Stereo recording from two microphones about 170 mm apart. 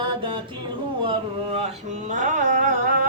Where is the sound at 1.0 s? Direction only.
35° right (ahead or behind); by 2.9 s 50° right (ahead or behind).